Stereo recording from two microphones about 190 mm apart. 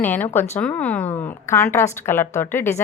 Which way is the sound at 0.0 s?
10° left (ahead or behind).